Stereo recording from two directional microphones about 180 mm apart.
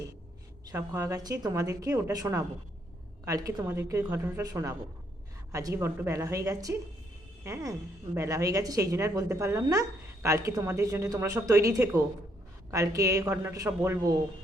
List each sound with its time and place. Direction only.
0.6 s a woman's voice: 20° right (ahead or behind)